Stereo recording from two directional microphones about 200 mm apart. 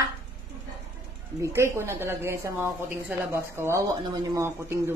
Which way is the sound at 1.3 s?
15° right (ahead or behind).